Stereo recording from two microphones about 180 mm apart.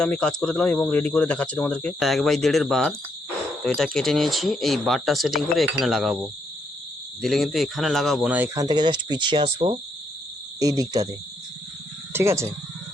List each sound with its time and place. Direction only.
0.0 s speech: 5° left (ahead or behind)
8.5 s speech: 25° right (ahead or behind)
12.1 s speech: 15° right (ahead or behind)